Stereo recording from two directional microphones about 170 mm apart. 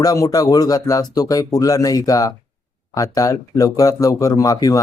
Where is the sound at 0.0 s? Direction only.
20° left (ahead or behind).